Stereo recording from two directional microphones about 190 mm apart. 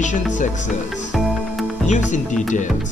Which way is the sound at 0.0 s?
40° left (ahead or behind).